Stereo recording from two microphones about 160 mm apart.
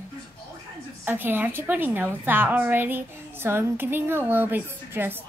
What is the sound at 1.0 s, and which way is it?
A woman's voice, 10° right (ahead or behind).